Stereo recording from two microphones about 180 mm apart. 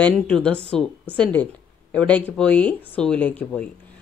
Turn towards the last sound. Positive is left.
turn(degrees=5)  # may be behind; listen again after turning